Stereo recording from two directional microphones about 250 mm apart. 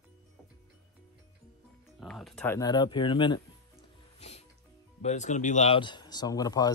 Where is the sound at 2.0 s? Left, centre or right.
Centre.